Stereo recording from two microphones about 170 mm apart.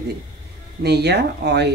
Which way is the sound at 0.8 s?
75° right (ahead or behind).